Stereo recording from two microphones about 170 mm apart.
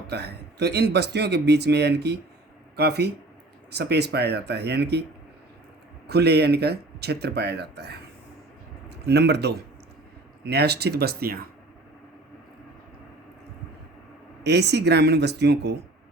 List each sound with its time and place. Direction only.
0.1 s speech: 75° right (ahead or behind)
6.1 s speech: 75° right (ahead or behind)
9.0 s speech: 75° right (ahead or behind)
14.4 s speech: 80° right